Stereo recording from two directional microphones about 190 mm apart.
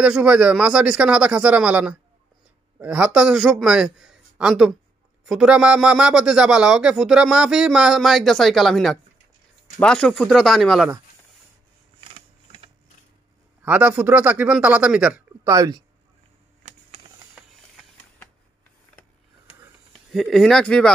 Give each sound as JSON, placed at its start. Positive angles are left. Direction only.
{"t": 0.0, "sound": "speech", "side_deg": -5}
{"t": 12.1, "sound": "a sound", "side_deg": -30}
{"t": 13.6, "sound": "speech", "side_deg": -10}
{"t": 15.4, "sound": "speech", "side_deg": -15}
{"t": 18.9, "sound": "a sound", "side_deg": 10}
{"t": 19.9, "sound": "speech", "side_deg": 0}